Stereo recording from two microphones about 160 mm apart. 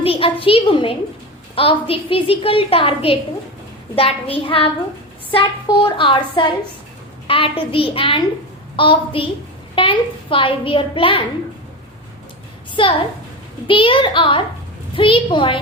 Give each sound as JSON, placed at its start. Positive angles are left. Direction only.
{"t": 0.0, "sound": "a child's voice", "side_deg": 35}
{"t": 12.7, "sound": "a woman's voice", "side_deg": 35}